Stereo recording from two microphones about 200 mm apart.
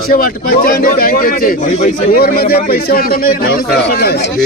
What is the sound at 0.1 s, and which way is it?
A man's voice, 45° left (ahead or behind).